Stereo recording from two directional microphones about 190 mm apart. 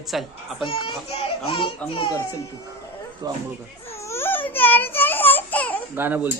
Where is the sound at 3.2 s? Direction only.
20° right (ahead or behind).